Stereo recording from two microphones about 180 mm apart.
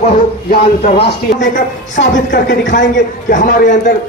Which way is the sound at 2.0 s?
60° left (ahead or behind).